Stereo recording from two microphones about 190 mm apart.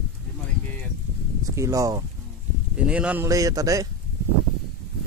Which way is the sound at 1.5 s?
15° right (ahead or behind).